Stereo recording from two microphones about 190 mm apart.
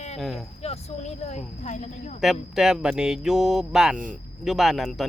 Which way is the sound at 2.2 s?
Centre (ahead or behind).